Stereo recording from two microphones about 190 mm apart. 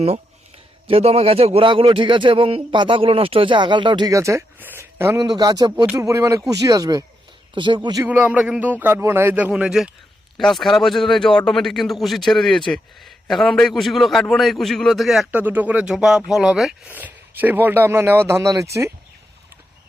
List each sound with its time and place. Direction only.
0.9 s a man's voice: 30° right (ahead or behind)
8.0 s a man's voice: 5° right (ahead or behind)